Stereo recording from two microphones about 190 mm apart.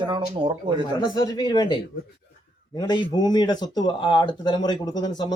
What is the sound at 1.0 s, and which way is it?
Speech, 25° left (ahead or behind).